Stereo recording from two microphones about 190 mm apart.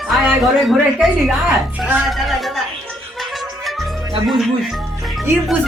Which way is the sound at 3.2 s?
Centre (ahead or behind).